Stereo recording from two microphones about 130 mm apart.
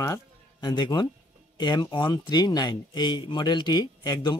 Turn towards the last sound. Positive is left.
turn(degrees=30)  # may be behind; listen again after turning